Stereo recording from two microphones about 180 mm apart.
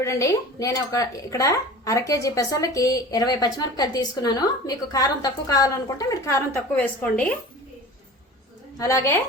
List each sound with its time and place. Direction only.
0.0 s speech: 15° left (ahead or behind)
8.8 s a woman's voice: 15° left (ahead or behind)